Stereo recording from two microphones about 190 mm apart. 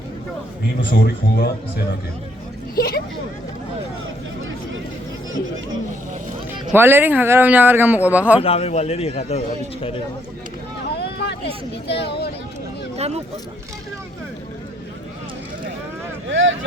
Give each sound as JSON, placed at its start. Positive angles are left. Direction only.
{"t": 0.9, "sound": "speech", "side_deg": 50}
{"t": 2.7, "sound": "speech", "side_deg": 50}
{"t": 6.5, "sound": "speech", "side_deg": -10}
{"t": 8.4, "sound": "a man's voice", "side_deg": 30}
{"t": 10.9, "sound": "speech", "side_deg": 60}
{"t": 13.0, "sound": "speech", "side_deg": -35}
{"t": 16.3, "sound": "speech", "side_deg": -80}